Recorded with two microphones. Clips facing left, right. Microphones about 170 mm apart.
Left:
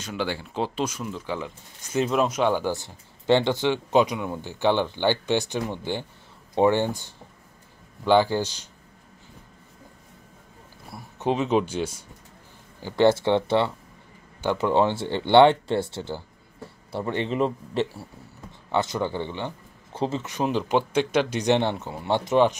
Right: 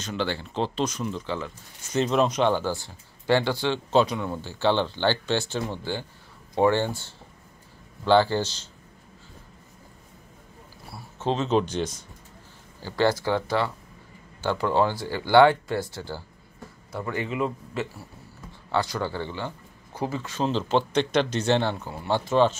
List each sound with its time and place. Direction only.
0.0 s speech: 10° left (ahead or behind)
11.1 s speech: 15° left (ahead or behind)
12.8 s a man's voice: 20° left (ahead or behind)
18.7 s speech: 20° left (ahead or behind)